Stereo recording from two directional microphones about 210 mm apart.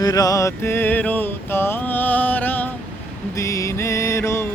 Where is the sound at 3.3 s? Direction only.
15° left (ahead or behind).